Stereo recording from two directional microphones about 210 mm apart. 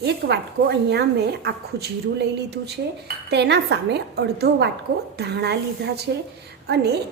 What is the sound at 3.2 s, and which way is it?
A woman's voice, 55° right (ahead or behind).